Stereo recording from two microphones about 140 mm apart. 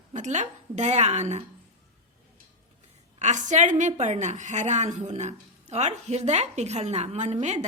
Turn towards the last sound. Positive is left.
turn(degrees=-55)  # may be behind; listen again after turning